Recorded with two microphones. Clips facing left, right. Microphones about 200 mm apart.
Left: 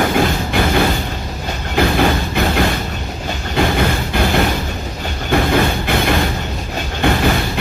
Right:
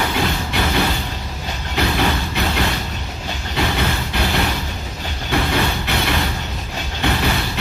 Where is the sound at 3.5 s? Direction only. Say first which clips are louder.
Left 5 dB; 50° left (ahead or behind).